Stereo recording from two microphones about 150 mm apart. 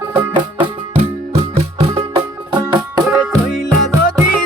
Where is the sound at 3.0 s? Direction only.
5° right (ahead or behind).